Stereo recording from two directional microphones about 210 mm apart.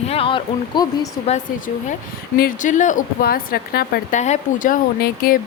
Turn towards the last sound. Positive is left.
turn(degrees=45)  # may be behind; listen again after turning